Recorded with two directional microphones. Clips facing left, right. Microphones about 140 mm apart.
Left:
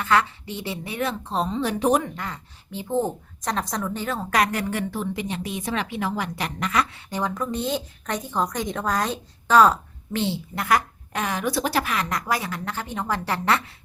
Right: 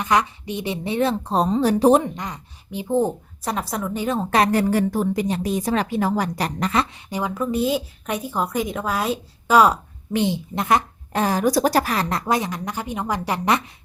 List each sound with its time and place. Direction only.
0.0 s a woman's voice: 15° right (ahead or behind)
1.3 s speech: 40° right (ahead or behind)
6.9 s a woman's voice: 10° right (ahead or behind); by 12.2 s 35° right (ahead or behind)
12.2 s a woman's voice: 20° right (ahead or behind)